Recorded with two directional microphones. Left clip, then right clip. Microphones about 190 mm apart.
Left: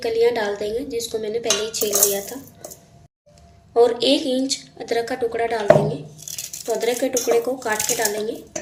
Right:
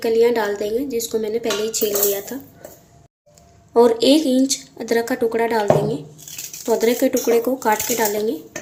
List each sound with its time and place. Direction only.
0.0 s a woman's voice: 45° right (ahead or behind)
3.8 s a woman's voice: 50° right (ahead or behind)
6.7 s speech: 55° right (ahead or behind)